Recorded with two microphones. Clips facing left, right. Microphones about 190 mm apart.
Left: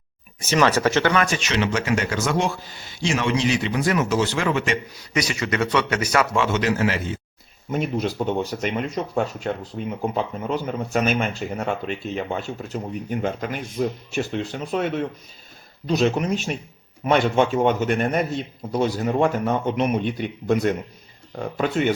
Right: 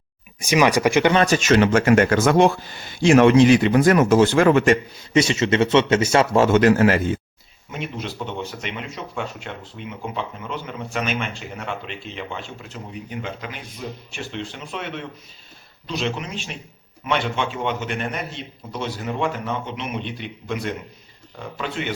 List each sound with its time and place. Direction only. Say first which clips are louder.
0.3 s speech: right 2 dB; 15° right (ahead or behind)
1.1 s speech: right 4 dB; 30° right (ahead or behind)
1.4 s speech: right 7 dB; 50° right (ahead or behind)
5.1 s speech: right 6 dB; 25° right (ahead or behind)
6.3 s speech: right 6 dB; 45° right (ahead or behind)
7.7 s speech: left 7 dB; 40° left (ahead or behind)